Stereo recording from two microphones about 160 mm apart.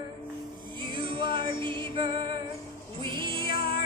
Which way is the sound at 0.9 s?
30° right (ahead or behind).